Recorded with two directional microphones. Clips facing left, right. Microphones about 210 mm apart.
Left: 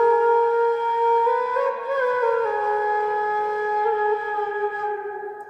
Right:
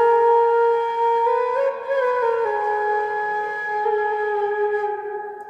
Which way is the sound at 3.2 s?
15° right (ahead or behind).